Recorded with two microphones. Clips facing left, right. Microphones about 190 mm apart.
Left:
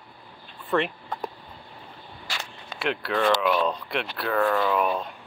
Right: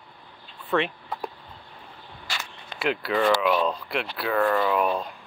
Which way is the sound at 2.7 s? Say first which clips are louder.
Right 2 dB; centre (ahead or behind).